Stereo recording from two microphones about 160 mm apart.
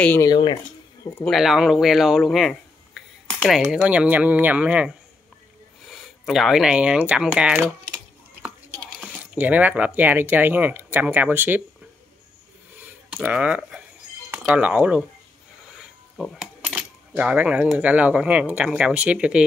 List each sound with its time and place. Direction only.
0.2 s speech: 25° left (ahead or behind)
1.2 s speech: centre (ahead or behind)
9.0 s speech: 10° right (ahead or behind)
12.8 s a sound: 10° right (ahead or behind)
14.3 s speech: 10° right (ahead or behind)
16.2 s speech: 5° right (ahead or behind)